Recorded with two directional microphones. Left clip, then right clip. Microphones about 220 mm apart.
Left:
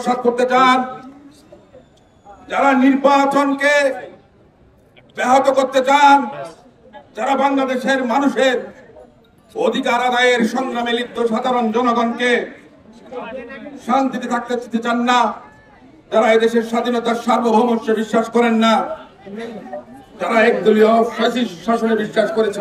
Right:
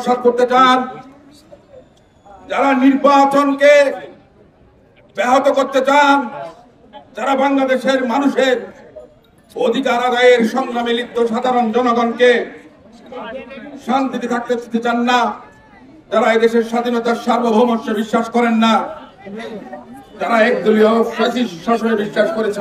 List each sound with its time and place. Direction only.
0.4 s a man's voice: centre (ahead or behind)
2.4 s a man's voice: centre (ahead or behind)
5.1 s a man's voice: centre (ahead or behind)
9.6 s a man's voice: centre (ahead or behind)
13.7 s a man's voice: centre (ahead or behind)
20.2 s a man's voice: centre (ahead or behind)